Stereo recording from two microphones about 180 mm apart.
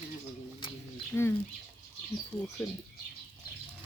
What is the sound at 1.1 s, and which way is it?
Speech, 10° left (ahead or behind).